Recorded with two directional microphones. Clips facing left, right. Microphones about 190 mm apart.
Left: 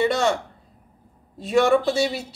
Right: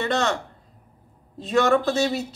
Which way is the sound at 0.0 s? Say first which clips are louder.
Left 3 dB; 10° left (ahead or behind).